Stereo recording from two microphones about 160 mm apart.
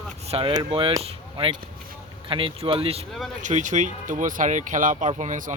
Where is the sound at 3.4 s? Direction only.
50° right (ahead or behind).